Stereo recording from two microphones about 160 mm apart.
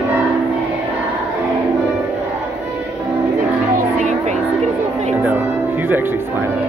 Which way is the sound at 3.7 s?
50° right (ahead or behind).